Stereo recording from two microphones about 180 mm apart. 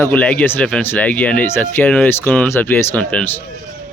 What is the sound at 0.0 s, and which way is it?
Speech, 10° left (ahead or behind).